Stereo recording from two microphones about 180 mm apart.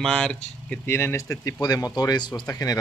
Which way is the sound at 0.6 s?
15° left (ahead or behind).